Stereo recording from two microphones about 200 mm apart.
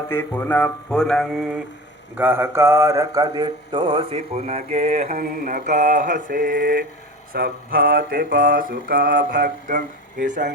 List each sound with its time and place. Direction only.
0.1 s speech: 10° left (ahead or behind); by 6.8 s 50° right (ahead or behind)
7.3 s mantra: 50° right (ahead or behind)